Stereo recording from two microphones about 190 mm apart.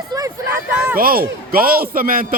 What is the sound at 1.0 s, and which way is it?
Speech, 50° right (ahead or behind).